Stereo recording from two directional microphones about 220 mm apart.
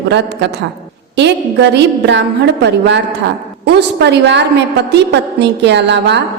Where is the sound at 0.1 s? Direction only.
50° right (ahead or behind).